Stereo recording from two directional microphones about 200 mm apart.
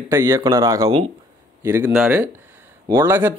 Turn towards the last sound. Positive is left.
turn(degrees=-10)  # may be behind; listen again after turning